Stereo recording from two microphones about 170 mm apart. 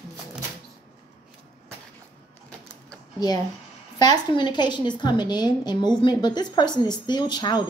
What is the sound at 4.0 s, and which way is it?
A woman's voice, 25° left (ahead or behind).